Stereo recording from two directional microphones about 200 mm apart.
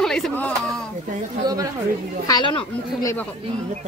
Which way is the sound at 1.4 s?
20° right (ahead or behind).